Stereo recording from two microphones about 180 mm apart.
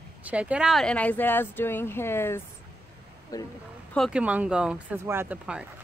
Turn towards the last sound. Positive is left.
turn(degrees=-5)  # may be behind; listen again after turning